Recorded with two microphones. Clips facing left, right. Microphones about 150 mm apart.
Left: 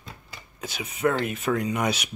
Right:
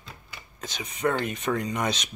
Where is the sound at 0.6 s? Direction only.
5° left (ahead or behind).